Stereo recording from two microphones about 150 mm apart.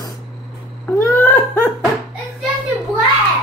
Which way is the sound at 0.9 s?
20° left (ahead or behind).